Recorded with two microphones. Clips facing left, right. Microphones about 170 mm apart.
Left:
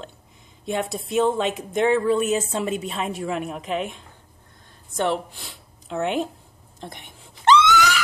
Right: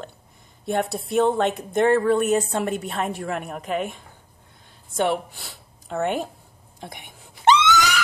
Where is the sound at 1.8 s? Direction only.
55° right (ahead or behind).